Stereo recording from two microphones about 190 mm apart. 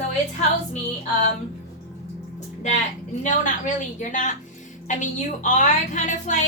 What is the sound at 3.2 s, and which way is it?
A woman's voice, 40° left (ahead or behind).